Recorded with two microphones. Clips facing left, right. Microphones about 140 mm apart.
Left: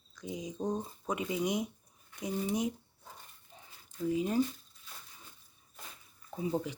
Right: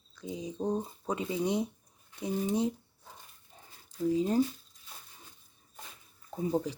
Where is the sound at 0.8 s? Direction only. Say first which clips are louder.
Right 2 dB; 30° right (ahead or behind).